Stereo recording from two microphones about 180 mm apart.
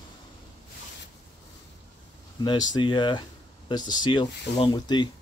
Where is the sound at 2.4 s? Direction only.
25° left (ahead or behind).